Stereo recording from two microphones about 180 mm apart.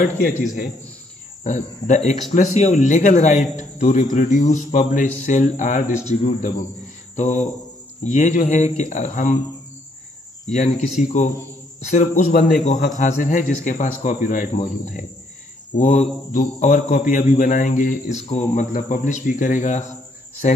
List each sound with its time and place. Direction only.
1.4 s speech: 40° left (ahead or behind)
3.5 s cricket: 40° left (ahead or behind)
6.0 s speech: 40° left (ahead or behind)
8.0 s cricket: 45° left (ahead or behind)
10.5 s speech: 40° left (ahead or behind)
11.8 s cricket: 40° left (ahead or behind)
15.8 s speech: 40° left (ahead or behind)
16.3 s cricket: 40° left (ahead or behind)
20.4 s speech: 40° left (ahead or behind)